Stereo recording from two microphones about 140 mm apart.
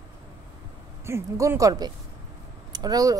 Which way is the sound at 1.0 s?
20° right (ahead or behind).